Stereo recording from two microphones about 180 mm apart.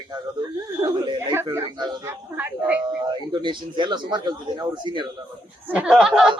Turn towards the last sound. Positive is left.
turn(degrees=-5)  # may be behind; listen again after turning